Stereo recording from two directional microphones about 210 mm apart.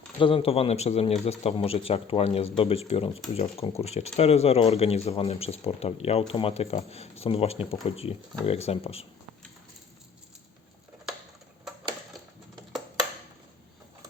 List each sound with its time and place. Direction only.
0.2 s speech: 25° left (ahead or behind)